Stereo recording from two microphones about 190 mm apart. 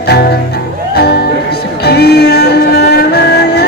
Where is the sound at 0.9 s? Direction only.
55° left (ahead or behind).